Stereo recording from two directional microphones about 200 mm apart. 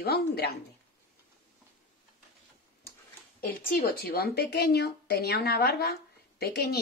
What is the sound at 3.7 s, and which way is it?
Speech, 50° left (ahead or behind).